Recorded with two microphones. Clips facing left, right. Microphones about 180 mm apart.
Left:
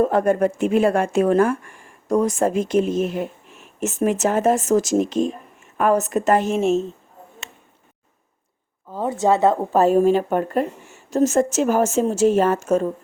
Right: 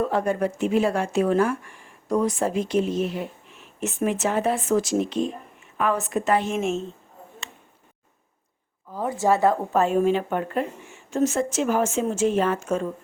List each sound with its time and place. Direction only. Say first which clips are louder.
0.0 s speech: left 6 dB; 50° left (ahead or behind); by 6.8 s 35° left (ahead or behind)
8.9 s a woman's voice: left 3 dB; 25° left (ahead or behind)
9.7 s a woman's voice: left 5 dB; 35° left (ahead or behind)